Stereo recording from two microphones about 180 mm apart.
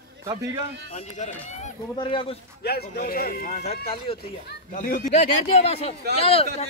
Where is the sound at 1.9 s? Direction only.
30° left (ahead or behind).